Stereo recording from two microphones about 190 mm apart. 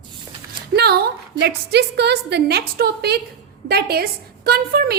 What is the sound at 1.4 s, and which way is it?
A woman's voice, 60° right (ahead or behind).